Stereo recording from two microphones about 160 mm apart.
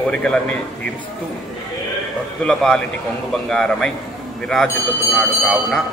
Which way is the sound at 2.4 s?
5° left (ahead or behind).